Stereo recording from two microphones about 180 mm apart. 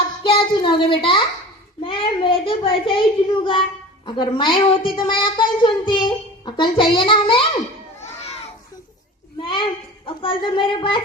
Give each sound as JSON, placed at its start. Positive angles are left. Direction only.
{"t": 0.3, "sound": "a child's voice", "side_deg": 30}
{"t": 9.4, "sound": "a sound", "side_deg": 25}
{"t": 10.1, "sound": "a woman's voice", "side_deg": 30}